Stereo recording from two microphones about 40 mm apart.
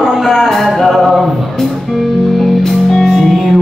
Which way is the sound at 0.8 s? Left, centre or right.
Centre.